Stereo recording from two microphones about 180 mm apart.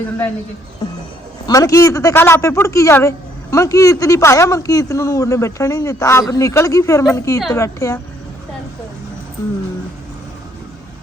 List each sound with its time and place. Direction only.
1.5 s a man's voice: 20° left (ahead or behind)